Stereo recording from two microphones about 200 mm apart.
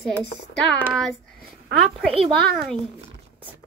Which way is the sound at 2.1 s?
30° right (ahead or behind).